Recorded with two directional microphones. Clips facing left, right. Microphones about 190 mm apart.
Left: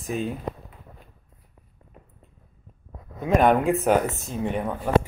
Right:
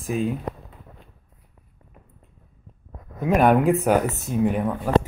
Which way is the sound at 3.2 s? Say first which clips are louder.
Right 2 dB; 10° right (ahead or behind).